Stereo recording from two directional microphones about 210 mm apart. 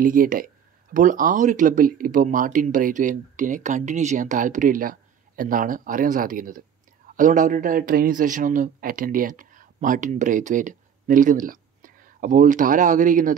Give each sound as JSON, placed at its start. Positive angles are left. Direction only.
{"t": 0.0, "sound": "a man's voice", "side_deg": -40}